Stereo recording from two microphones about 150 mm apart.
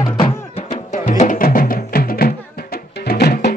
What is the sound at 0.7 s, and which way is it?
Music, 60° left (ahead or behind).